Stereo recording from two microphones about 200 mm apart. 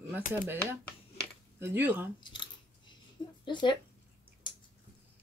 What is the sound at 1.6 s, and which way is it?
Speech, 10° right (ahead or behind).